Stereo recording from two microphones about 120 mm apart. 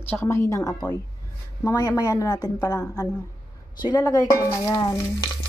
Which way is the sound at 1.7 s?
35° left (ahead or behind).